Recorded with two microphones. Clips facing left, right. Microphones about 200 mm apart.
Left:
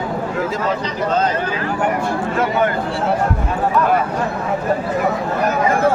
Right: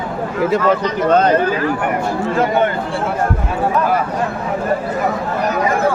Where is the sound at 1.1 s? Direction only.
60° right (ahead or behind).